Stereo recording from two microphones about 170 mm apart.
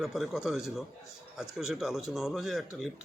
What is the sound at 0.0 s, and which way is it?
Speech, centre (ahead or behind).